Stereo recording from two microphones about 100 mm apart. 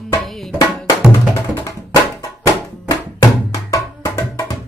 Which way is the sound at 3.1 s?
35° left (ahead or behind).